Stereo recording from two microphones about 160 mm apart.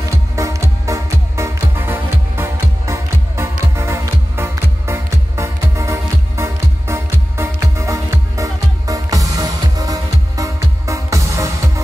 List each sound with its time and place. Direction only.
0.4 s music: 20° right (ahead or behind)